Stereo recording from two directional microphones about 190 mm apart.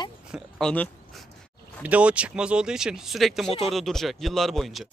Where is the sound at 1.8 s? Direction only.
5° right (ahead or behind).